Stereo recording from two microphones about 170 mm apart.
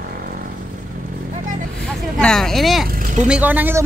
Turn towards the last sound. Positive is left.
turn(degrees=-10)  # may be behind; listen again after turning